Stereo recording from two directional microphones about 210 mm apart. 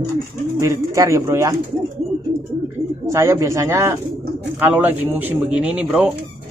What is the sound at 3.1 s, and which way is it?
Speech, 15° right (ahead or behind).